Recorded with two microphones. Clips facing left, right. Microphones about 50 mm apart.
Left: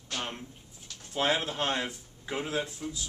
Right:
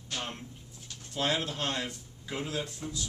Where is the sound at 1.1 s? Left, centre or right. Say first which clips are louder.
Left 2 dB; left.